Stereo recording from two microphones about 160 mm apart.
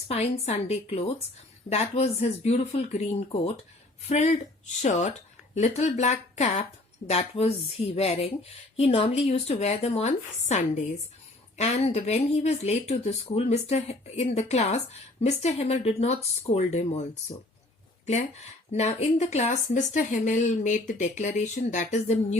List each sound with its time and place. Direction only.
0.1 s speech: 40° left (ahead or behind)
4.1 s speech: 45° left (ahead or behind)
18.0 s speech: 45° left (ahead or behind)